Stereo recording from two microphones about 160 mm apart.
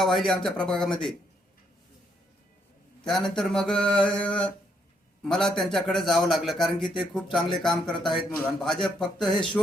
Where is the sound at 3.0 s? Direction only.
5° left (ahead or behind).